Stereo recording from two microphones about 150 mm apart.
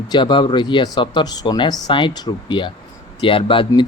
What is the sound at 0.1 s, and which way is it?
Speech, 30° left (ahead or behind).